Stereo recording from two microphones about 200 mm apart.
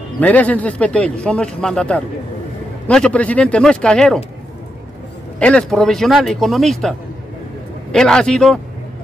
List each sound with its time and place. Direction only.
0.2 s speech: 10° left (ahead or behind)
5.4 s speech: 5° left (ahead or behind)